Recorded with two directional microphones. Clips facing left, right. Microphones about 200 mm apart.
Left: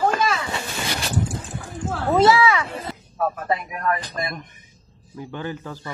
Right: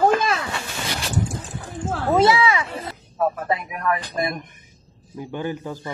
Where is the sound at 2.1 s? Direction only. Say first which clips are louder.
Left 1 dB; 15° right (ahead or behind).